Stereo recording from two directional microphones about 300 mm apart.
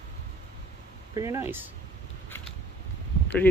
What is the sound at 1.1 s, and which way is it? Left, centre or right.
Speech, centre.